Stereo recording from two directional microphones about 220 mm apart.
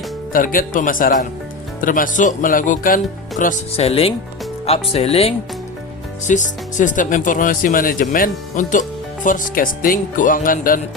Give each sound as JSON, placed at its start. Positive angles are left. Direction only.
{"t": 0.3, "sound": "speech", "side_deg": 40}